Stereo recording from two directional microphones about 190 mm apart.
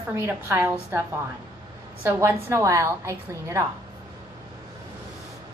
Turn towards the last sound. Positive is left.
turn(degrees=-15)  # may be behind; listen again after turning